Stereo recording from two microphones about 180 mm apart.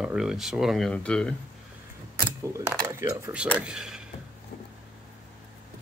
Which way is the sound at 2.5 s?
15° right (ahead or behind).